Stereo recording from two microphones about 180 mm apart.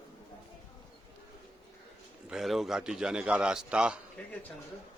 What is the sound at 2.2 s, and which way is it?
A man's voice, centre (ahead or behind).